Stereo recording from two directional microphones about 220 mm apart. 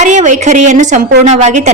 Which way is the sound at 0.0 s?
35° right (ahead or behind).